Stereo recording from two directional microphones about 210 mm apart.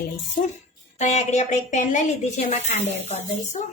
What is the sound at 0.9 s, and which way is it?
A woman's voice, 35° left (ahead or behind).